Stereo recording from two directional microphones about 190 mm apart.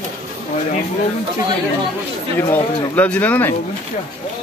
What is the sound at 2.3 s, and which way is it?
Speech, 10° left (ahead or behind).